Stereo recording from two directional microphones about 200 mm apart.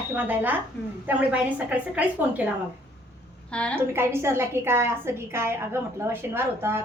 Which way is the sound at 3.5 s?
5° left (ahead or behind).